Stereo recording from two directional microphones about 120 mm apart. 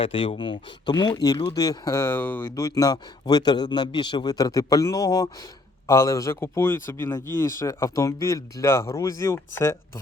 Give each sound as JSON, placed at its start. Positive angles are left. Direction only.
{"t": 0.0, "sound": "speech", "side_deg": 50}
{"t": 2.6, "sound": "a man's voice", "side_deg": 30}